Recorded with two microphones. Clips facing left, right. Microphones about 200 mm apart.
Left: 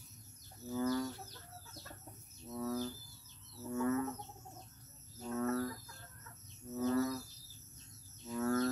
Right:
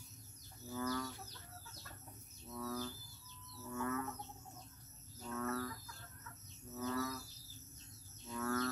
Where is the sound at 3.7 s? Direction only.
25° left (ahead or behind).